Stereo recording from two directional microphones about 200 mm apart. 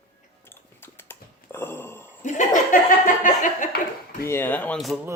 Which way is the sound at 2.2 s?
40° left (ahead or behind).